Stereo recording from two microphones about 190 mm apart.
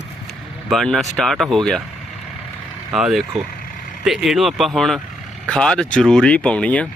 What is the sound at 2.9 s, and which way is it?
Speech, centre (ahead or behind).